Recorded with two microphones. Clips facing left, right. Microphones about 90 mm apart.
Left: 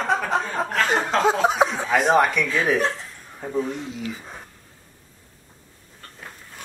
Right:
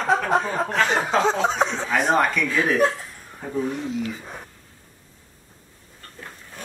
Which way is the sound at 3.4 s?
Centre (ahead or behind).